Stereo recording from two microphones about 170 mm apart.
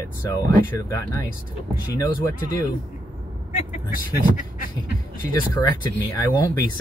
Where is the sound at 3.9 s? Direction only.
55° left (ahead or behind).